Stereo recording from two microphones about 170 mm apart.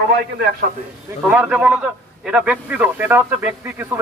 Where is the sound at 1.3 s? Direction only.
5° right (ahead or behind).